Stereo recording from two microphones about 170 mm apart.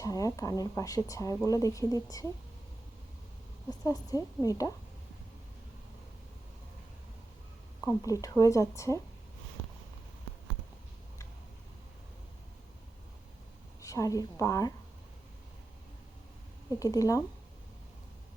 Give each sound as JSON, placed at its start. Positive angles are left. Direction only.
{"t": 0.0, "sound": "speech", "side_deg": 20}
{"t": 3.7, "sound": "speech", "side_deg": 20}
{"t": 7.8, "sound": "speech", "side_deg": 15}
{"t": 13.8, "sound": "speech", "side_deg": 20}
{"t": 16.8, "sound": "speech", "side_deg": 20}